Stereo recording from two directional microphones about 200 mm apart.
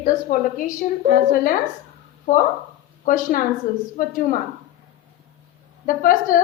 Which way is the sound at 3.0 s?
40° left (ahead or behind).